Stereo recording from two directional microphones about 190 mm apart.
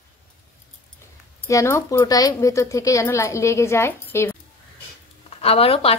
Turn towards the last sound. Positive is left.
turn(degrees=30)  # may be behind; listen again after turning